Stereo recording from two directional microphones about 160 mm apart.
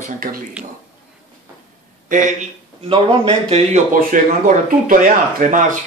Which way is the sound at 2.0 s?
55° right (ahead or behind).